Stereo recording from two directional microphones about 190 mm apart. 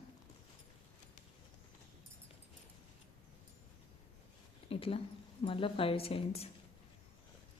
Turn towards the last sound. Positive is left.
turn(degrees=30)  # may be behind; listen again after turning